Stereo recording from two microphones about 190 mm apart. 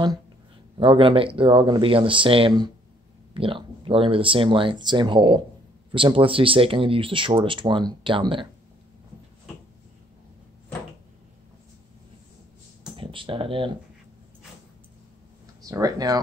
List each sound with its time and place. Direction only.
0.7 s speech: 25° right (ahead or behind)
12.9 s speech: 25° right (ahead or behind)
15.6 s speech: 20° right (ahead or behind)